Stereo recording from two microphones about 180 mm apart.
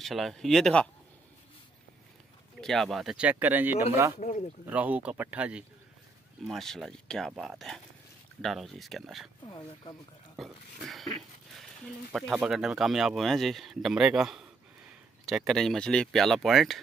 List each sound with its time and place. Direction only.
0.0 s speech: centre (ahead or behind)
2.6 s speech: centre (ahead or behind); by 4.1 s 15° right (ahead or behind)
4.2 s speech: 40° left (ahead or behind)
4.6 s speech: 10° right (ahead or behind)
9.5 s speech: 20° left (ahead or behind)
10.3 s speech: centre (ahead or behind)
12.1 s speech: centre (ahead or behind)